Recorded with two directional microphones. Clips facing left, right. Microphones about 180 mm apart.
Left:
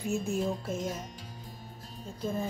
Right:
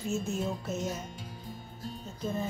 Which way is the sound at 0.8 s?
5° right (ahead or behind).